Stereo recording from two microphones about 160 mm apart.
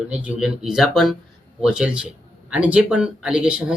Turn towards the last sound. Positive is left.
turn(degrees=-5)  # may be behind; listen again after turning